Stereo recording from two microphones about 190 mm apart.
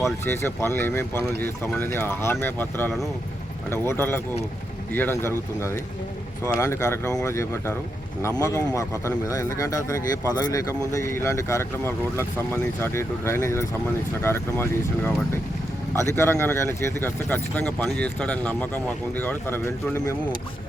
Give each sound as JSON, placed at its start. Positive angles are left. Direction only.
{"t": 0.3, "sound": "speech", "side_deg": 10}